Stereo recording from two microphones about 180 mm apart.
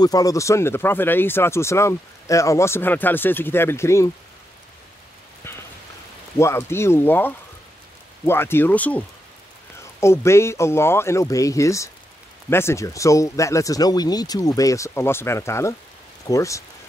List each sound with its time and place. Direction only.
0.0 s speech: 20° left (ahead or behind)
6.3 s speech: 15° left (ahead or behind)